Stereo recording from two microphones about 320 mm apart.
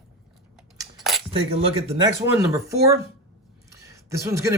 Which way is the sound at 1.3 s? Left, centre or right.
Centre.